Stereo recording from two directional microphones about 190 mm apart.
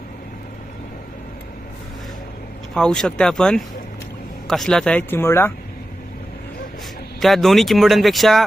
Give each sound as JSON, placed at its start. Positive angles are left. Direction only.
{"t": 2.7, "sound": "speech", "side_deg": 5}
{"t": 7.2, "sound": "speech", "side_deg": 0}